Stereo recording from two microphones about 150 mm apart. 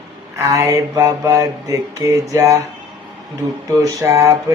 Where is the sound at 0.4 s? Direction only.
20° right (ahead or behind).